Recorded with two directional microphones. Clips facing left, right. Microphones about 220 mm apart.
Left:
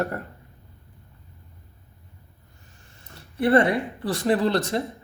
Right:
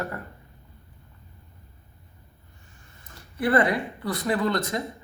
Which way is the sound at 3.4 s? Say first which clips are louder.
Left 3 dB; 25° left (ahead or behind).